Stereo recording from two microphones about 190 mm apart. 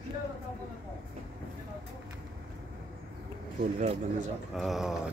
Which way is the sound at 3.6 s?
40° right (ahead or behind).